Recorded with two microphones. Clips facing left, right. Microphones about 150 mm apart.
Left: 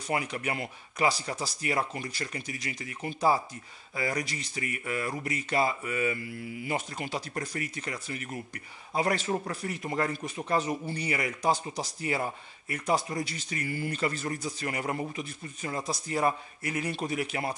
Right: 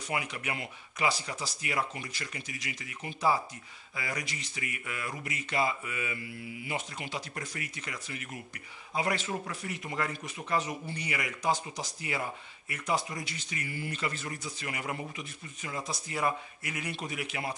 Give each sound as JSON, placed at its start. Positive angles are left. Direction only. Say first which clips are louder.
{"t": 0.1, "sound": "speech", "louder": "left 4 dB", "side_deg": 40}